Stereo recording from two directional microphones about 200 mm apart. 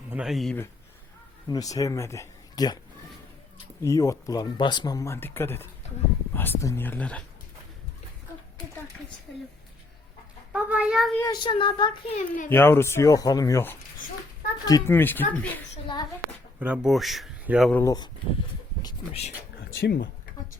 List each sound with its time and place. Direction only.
0.1 s a child's voice: 5° right (ahead or behind)
1.5 s speech: 20° left (ahead or behind)
3.8 s speech: 15° left (ahead or behind)
10.5 s a child's voice: 5° right (ahead or behind)
11.2 s speech: 20° left (ahead or behind)
12.5 s speech: 10° left (ahead or behind)
15.7 s speech: 25° left (ahead or behind)
16.6 s speech: 5° right (ahead or behind)
17.7 s speech: 10° left (ahead or behind)
18.8 s speech: 20° left (ahead or behind)
19.5 s speech: 50° left (ahead or behind)